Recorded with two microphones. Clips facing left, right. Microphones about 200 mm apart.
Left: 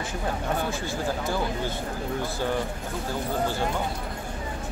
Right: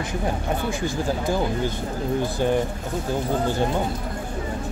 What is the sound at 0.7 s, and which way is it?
Speech, 15° right (ahead or behind).